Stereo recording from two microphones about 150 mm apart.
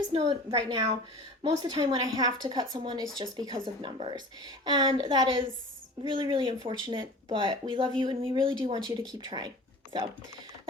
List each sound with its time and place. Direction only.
0.1 s speech: 40° right (ahead or behind)
1.5 s a woman's voice: 25° right (ahead or behind)